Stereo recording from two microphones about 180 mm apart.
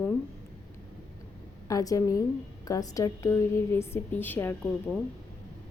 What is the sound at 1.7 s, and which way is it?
A woman's voice, 20° left (ahead or behind).